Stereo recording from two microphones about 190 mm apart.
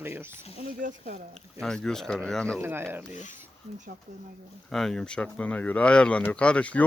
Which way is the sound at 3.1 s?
40° left (ahead or behind).